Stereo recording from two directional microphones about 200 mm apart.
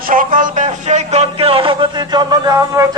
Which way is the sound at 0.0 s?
45° right (ahead or behind).